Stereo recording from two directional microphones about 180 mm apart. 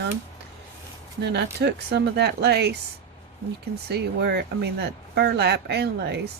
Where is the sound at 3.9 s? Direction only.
65° right (ahead or behind).